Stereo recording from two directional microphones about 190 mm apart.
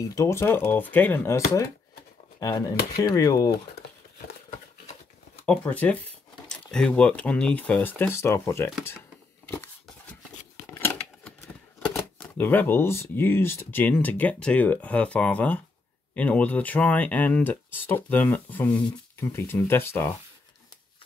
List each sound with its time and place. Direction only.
0.1 s speech: 15° left (ahead or behind)
4.5 s a sound: 40° left (ahead or behind)
5.4 s speech: 5° left (ahead or behind)
10.8 s speech: 10° left (ahead or behind)